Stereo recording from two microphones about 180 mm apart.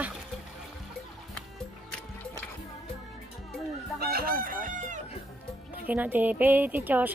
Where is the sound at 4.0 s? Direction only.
55° right (ahead or behind).